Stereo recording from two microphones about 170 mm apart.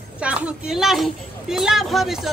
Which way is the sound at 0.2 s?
5° right (ahead or behind).